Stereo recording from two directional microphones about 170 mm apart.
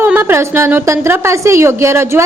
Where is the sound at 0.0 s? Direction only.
15° right (ahead or behind).